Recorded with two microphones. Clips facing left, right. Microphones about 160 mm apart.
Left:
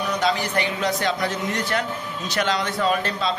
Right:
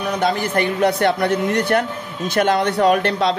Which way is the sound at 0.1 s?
55° right (ahead or behind).